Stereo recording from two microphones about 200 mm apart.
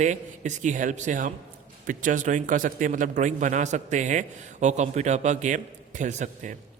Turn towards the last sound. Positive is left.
turn(degrees=-40)  # may be behind; listen again after turning